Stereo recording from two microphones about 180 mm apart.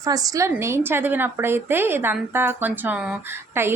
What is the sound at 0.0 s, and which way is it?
A woman's voice, 20° right (ahead or behind).